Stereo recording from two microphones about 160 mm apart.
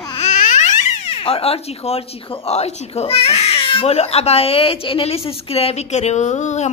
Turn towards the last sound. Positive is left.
turn(degrees=45)  # may be behind; listen again after turning